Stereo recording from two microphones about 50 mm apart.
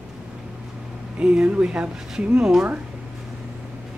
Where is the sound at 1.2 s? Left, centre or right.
Right.